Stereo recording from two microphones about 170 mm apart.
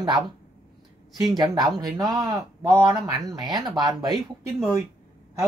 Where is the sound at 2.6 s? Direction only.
20° right (ahead or behind).